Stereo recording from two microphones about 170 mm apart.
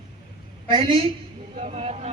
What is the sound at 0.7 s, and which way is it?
Speech, 30° right (ahead or behind).